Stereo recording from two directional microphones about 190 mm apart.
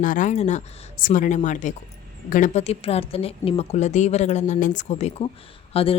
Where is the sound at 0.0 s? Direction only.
45° left (ahead or behind).